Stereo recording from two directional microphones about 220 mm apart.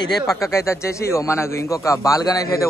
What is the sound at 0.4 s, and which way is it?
A man's voice, 15° left (ahead or behind).